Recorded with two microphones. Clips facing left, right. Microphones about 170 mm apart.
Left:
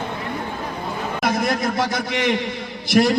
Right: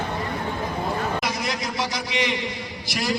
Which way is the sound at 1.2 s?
50° left (ahead or behind).